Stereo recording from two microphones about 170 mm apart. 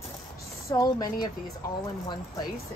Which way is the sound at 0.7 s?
20° left (ahead or behind).